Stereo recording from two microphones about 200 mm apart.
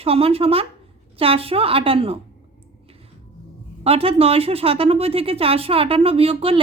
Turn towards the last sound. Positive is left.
turn(degrees=-30)  # may be behind; listen again after turning